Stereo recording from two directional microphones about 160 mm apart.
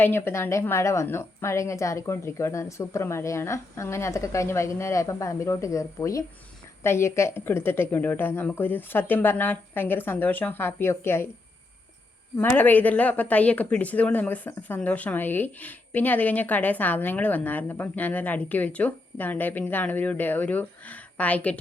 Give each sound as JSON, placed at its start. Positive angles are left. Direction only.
{"t": 0.0, "sound": "speech", "side_deg": 15}
{"t": 12.4, "sound": "speech", "side_deg": 10}